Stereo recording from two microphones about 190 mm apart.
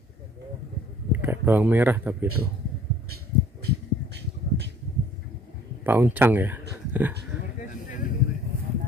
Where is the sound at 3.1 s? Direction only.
60° right (ahead or behind).